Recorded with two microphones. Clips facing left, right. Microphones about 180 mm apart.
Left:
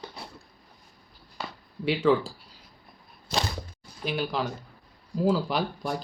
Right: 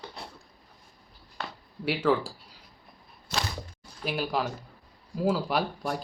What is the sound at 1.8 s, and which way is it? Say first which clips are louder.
Speech: left 3 dB; 5° right (ahead or behind).